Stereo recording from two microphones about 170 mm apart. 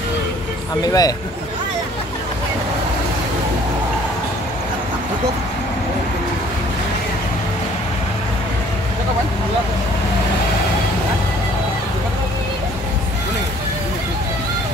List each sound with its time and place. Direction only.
0.8 s a man's voice: 20° left (ahead or behind)